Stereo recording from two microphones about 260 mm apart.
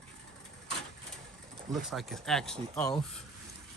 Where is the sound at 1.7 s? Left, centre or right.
Centre.